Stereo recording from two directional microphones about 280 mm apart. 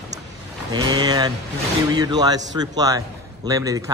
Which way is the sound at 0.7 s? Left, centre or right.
Centre.